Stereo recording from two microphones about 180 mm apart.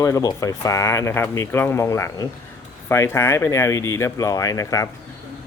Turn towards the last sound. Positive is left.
turn(degrees=20)  # may be behind; listen again after turning